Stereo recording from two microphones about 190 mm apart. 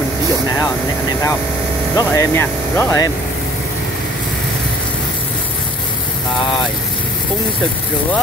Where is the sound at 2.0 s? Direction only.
15° left (ahead or behind).